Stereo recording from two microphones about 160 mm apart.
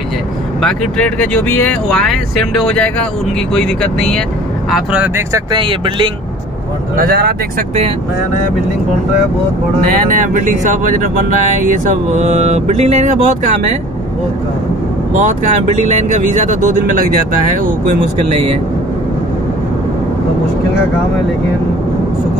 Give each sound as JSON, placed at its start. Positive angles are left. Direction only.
{"t": 0.6, "sound": "speech", "side_deg": 5}
{"t": 5.3, "sound": "speech", "side_deg": -30}
{"t": 7.0, "sound": "speech", "side_deg": -75}
{"t": 10.0, "sound": "speech", "side_deg": -55}
{"t": 15.1, "sound": "speech", "side_deg": -50}